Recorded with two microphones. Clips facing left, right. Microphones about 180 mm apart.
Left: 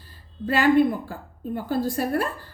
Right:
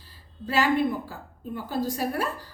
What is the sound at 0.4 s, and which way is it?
A woman's voice, 50° left (ahead or behind).